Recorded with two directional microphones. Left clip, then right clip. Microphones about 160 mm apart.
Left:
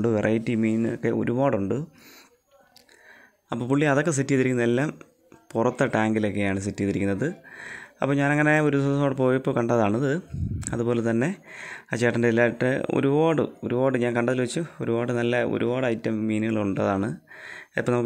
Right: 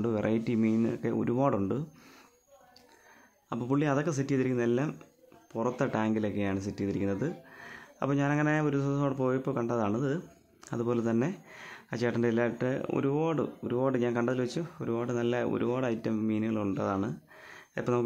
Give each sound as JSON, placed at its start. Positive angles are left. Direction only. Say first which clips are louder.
{"t": 0.0, "sound": "speech", "louder": "left 7 dB", "side_deg": 20}
{"t": 3.4, "sound": "speech", "louder": "left 7 dB", "side_deg": 25}